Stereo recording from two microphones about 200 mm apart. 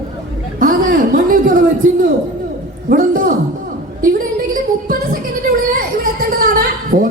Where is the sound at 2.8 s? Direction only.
45° right (ahead or behind).